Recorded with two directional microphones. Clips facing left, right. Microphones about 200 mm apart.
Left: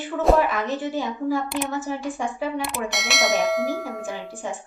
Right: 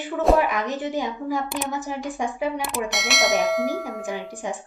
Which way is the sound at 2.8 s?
Centre (ahead or behind).